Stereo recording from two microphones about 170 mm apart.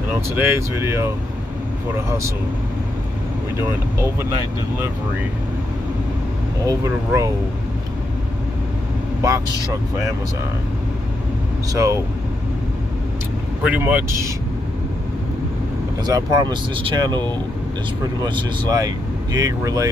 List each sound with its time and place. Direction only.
0.4 s speech: 15° right (ahead or behind)
6.6 s speech: 20° right (ahead or behind)
11.7 s speech: 15° right (ahead or behind)
13.7 s speech: 10° right (ahead or behind)
16.1 s speech: 20° right (ahead or behind)